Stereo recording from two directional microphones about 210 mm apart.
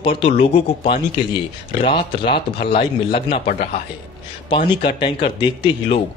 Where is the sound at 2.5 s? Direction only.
25° left (ahead or behind).